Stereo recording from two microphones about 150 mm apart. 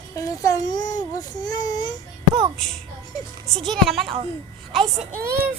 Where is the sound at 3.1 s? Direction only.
30° left (ahead or behind).